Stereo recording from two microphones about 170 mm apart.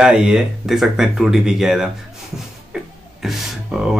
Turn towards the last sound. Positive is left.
turn(degrees=-5)  # may be behind; listen again after turning